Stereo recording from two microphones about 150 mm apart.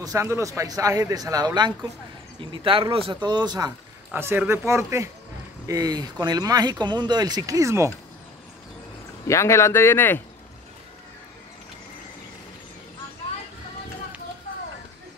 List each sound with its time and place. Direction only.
0.0 s a man's voice: 20° right (ahead or behind)
4.1 s a man's voice: 15° right (ahead or behind)
9.3 s speech: 20° left (ahead or behind)